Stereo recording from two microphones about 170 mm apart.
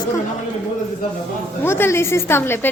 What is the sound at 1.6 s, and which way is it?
A woman's voice, 15° left (ahead or behind).